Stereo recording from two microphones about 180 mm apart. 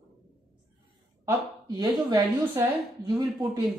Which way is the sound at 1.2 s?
20° right (ahead or behind).